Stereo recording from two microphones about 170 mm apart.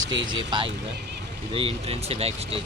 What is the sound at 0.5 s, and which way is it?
Speech, 25° right (ahead or behind).